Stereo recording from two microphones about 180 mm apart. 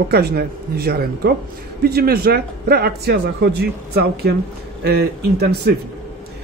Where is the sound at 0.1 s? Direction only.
60° right (ahead or behind).